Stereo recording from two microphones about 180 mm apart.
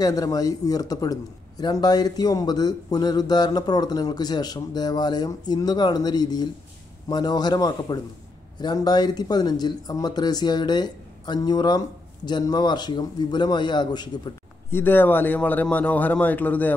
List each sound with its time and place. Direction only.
0.0 s a man's voice: 20° left (ahead or behind)
14.7 s a man's voice: 10° left (ahead or behind)